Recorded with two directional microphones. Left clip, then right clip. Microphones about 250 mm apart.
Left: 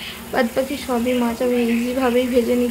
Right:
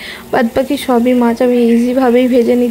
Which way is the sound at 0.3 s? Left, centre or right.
Right.